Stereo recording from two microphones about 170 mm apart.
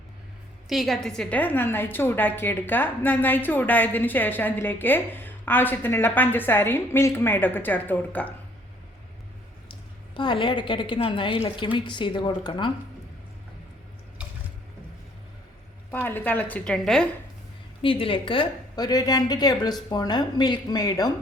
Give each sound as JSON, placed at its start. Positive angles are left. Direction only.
{"t": 0.7, "sound": "a woman's voice", "side_deg": 0}
{"t": 10.2, "sound": "a woman's voice", "side_deg": 30}
{"t": 15.9, "sound": "a woman's voice", "side_deg": 10}
{"t": 17.8, "sound": "a woman's voice", "side_deg": 30}